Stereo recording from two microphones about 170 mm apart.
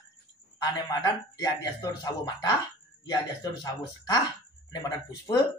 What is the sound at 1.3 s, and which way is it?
Speech, 20° left (ahead or behind).